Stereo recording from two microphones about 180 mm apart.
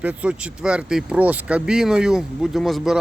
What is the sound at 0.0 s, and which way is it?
Speech, 10° right (ahead or behind).